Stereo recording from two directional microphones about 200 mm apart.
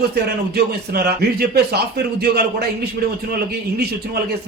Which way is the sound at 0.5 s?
50° right (ahead or behind).